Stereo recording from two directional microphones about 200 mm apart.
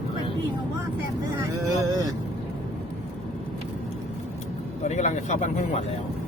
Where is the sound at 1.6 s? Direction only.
20° right (ahead or behind).